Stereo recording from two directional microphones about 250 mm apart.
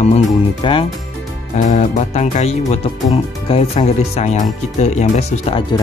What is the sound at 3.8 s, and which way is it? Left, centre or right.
Speech, left.